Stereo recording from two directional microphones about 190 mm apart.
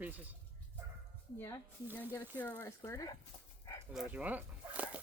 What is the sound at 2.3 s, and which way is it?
Speech, 10° left (ahead or behind).